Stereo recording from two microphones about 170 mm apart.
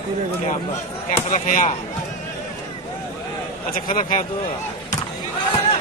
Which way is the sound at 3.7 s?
55° left (ahead or behind).